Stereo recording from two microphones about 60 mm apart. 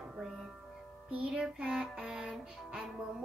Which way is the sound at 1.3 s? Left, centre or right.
Centre.